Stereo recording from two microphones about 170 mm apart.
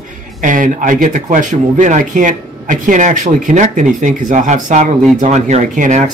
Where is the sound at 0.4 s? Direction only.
50° right (ahead or behind).